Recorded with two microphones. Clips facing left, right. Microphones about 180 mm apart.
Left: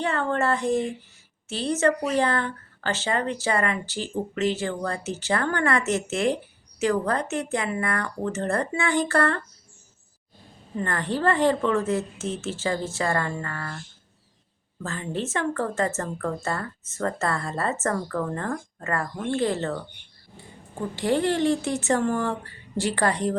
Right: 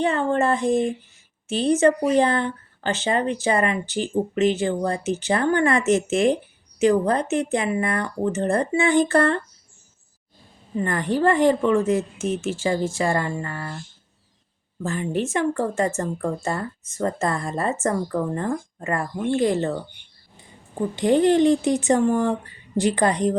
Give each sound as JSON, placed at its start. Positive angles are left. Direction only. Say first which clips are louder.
{"t": 0.0, "sound": "speech", "louder": "right 4 dB", "side_deg": -20}
{"t": 10.8, "sound": "speech", "louder": "right 5 dB", "side_deg": -15}